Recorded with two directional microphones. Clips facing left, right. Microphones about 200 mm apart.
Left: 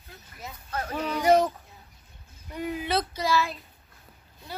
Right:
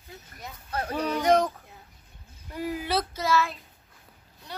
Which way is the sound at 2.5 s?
5° right (ahead or behind).